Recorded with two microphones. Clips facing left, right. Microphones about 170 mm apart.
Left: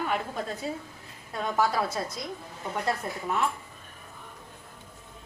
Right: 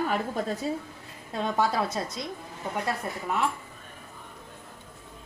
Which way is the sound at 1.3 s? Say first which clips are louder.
Right 1 dB; 25° right (ahead or behind).